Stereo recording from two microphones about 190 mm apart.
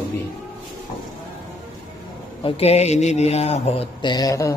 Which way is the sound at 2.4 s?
35° left (ahead or behind).